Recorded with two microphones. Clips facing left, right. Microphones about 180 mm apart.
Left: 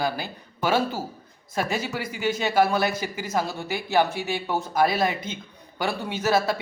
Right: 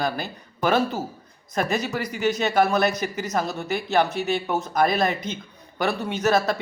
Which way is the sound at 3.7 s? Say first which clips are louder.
Right 1 dB; 10° left (ahead or behind).